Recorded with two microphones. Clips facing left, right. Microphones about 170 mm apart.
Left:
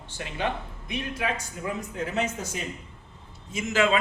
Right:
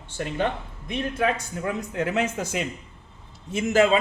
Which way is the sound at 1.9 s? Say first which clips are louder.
Right 4 dB; 80° right.